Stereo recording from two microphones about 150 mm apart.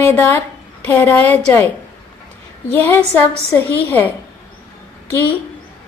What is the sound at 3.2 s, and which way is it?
Speech, 10° left (ahead or behind).